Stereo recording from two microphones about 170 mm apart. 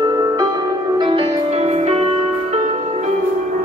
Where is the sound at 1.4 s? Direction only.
40° right (ahead or behind).